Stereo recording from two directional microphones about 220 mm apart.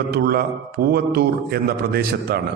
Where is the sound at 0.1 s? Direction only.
45° right (ahead or behind).